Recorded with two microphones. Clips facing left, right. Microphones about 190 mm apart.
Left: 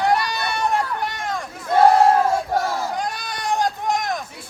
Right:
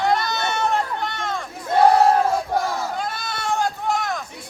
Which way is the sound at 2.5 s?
10° left (ahead or behind).